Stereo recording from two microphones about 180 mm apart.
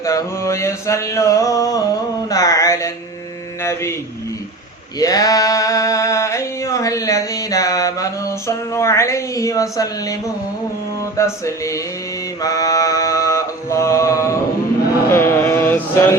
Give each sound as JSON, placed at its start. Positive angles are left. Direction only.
{"t": 0.0, "sound": "mantra", "side_deg": 20}
{"t": 4.9, "sound": "a sound", "side_deg": 20}
{"t": 11.0, "sound": "mantra", "side_deg": 15}